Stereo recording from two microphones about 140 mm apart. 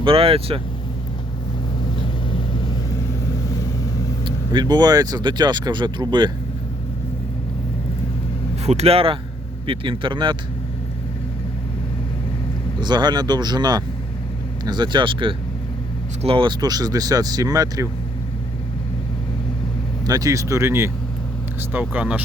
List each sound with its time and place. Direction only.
0.0 s speech: 40° right (ahead or behind)
4.5 s speech: 30° right (ahead or behind)
8.6 s speech: 50° right (ahead or behind)
12.8 s speech: 30° right (ahead or behind)
20.1 s speech: 25° right (ahead or behind); by 22.2 s 10° right (ahead or behind)